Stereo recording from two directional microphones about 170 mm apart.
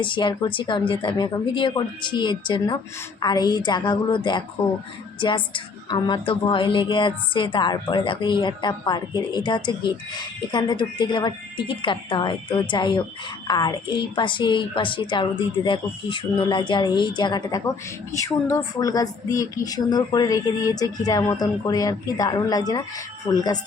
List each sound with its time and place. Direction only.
0.0 s a woman's voice: 30° left (ahead or behind)